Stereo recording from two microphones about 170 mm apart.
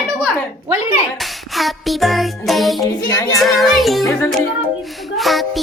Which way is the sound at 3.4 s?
Centre (ahead or behind).